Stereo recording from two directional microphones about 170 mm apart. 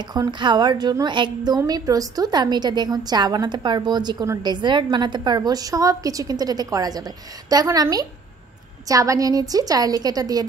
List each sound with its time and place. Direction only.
0.1 s a woman's voice: 25° right (ahead or behind)